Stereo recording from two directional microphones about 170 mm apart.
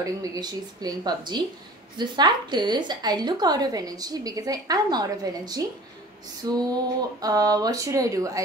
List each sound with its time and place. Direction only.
0.0 s a woman's voice: 20° right (ahead or behind)